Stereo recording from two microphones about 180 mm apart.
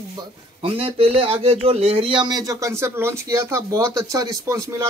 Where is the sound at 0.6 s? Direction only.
30° right (ahead or behind).